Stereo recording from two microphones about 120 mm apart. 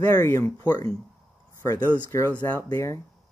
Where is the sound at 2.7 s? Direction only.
30° left (ahead or behind).